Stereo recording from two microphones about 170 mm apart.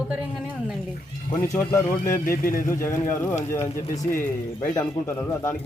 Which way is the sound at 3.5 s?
15° left (ahead or behind).